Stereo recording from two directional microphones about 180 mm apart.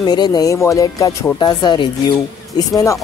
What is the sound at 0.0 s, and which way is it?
Speech, 25° left (ahead or behind).